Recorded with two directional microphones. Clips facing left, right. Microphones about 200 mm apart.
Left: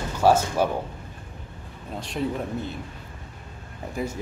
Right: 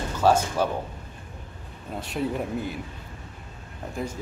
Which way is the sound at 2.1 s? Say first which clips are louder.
Even; 10° right (ahead or behind).